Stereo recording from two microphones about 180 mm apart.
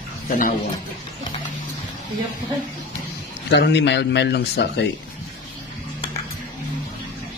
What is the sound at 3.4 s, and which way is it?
Speech, 70° left (ahead or behind).